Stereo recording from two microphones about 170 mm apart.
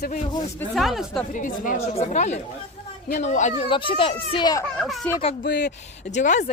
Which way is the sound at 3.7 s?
30° left (ahead or behind).